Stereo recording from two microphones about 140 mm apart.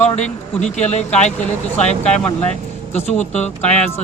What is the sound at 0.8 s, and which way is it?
Speech, 55° left (ahead or behind).